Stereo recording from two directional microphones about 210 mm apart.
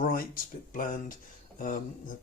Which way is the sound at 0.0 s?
40° left (ahead or behind).